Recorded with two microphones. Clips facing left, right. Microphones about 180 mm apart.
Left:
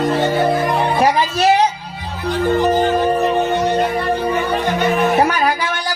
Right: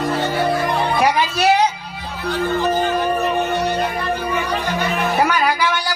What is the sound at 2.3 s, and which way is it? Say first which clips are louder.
Music: left 4 dB; 20° left (ahead or behind).